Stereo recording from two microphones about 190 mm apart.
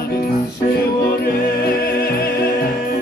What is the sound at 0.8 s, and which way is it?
Music, 55° left (ahead or behind).